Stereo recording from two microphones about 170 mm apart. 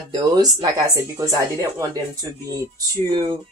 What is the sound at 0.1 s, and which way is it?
Speech, 20° right (ahead or behind).